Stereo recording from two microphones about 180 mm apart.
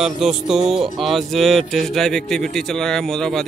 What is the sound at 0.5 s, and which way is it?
Speech, 5° right (ahead or behind).